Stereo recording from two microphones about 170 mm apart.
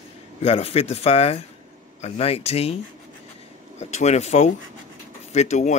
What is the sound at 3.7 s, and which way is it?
Speech, 40° left (ahead or behind).